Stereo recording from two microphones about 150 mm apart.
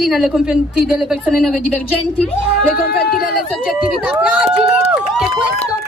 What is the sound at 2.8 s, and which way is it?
Speech, 90° left.